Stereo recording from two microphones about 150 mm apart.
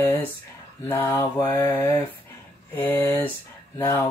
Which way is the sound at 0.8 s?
15° left (ahead or behind).